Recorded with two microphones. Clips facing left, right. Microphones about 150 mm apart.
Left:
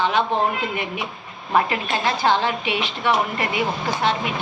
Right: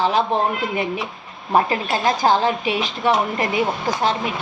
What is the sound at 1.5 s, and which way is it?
Speech, 35° right (ahead or behind).